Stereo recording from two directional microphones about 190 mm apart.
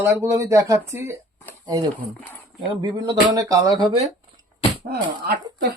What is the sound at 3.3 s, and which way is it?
Speech, 20° right (ahead or behind).